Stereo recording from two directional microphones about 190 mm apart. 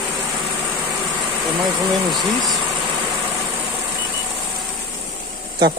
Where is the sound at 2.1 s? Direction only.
Centre (ahead or behind).